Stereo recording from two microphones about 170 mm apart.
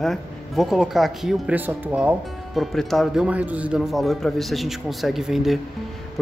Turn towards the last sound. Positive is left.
turn(degrees=0)  # may be behind; listen again after turning